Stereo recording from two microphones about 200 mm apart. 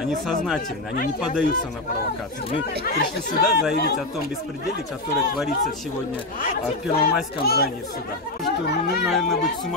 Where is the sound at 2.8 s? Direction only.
45° left (ahead or behind).